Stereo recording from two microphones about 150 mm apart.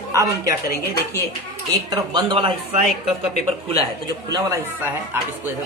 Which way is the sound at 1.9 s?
30° right (ahead or behind).